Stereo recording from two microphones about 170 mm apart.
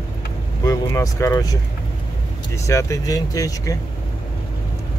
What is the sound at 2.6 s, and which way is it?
Speech, 20° left (ahead or behind).